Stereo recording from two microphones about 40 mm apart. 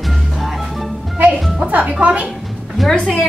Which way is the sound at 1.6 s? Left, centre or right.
Right.